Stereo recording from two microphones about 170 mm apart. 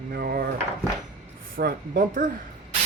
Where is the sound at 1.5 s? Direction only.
60° right (ahead or behind).